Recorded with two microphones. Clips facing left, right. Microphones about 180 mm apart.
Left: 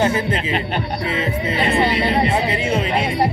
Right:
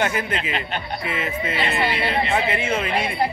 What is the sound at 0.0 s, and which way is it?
Speech, 30° left (ahead or behind).